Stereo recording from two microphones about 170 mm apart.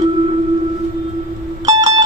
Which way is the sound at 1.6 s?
20° right (ahead or behind).